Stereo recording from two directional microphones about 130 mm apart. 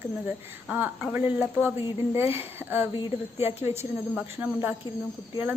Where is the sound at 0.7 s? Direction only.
15° right (ahead or behind).